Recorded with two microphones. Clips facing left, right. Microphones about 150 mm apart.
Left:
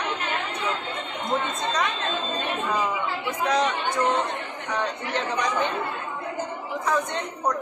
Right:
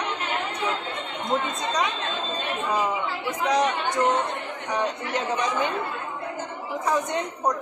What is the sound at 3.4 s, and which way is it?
A woman's voice, 15° right (ahead or behind).